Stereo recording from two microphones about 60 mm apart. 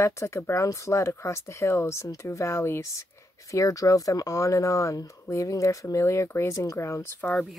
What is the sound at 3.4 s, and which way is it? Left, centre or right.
Speech, left.